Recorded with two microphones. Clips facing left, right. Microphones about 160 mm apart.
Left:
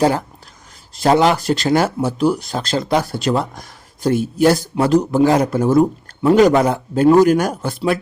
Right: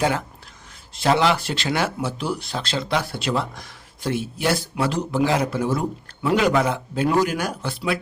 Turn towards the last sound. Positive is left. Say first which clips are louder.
# left 6 dB
turn(degrees=45)  # may be behind; listen again after turning